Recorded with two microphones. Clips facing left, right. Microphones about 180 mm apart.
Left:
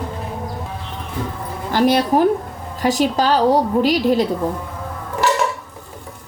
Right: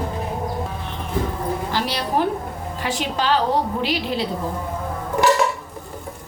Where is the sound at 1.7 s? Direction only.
50° left (ahead or behind).